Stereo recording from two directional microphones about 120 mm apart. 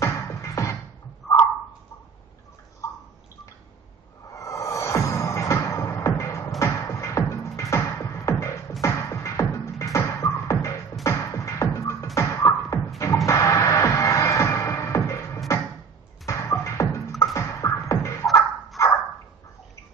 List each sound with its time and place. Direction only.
0.0 s music: 25° left (ahead or behind)
1.2 s a sound: centre (ahead or behind)
4.4 s music: 25° left (ahead or behind)
11.1 s beatboxing: 25° left (ahead or behind)
13.0 s music: 25° left (ahead or behind)
17.2 s beatboxing: 25° left (ahead or behind)